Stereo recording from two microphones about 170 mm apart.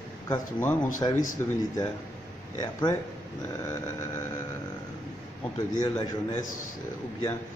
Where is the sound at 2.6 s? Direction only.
25° left (ahead or behind).